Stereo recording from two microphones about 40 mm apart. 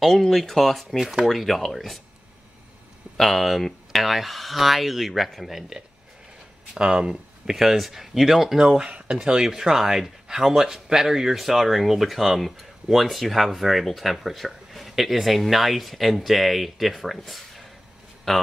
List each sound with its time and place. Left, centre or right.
0.3 s speech: centre
0.9 s speech: centre
1.2 s speech: centre
3.2 s speech: centre
6.8 s speech: right
7.5 s speech: centre
8.5 s speech: centre
8.9 s speech: right
9.2 s speech: centre
18.3 s speech: centre